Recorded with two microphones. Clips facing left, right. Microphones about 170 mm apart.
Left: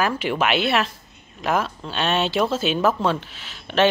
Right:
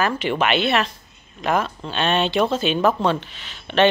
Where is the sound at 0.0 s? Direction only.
5° left (ahead or behind).